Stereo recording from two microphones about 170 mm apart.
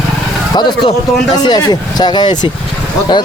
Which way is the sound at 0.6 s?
25° left (ahead or behind).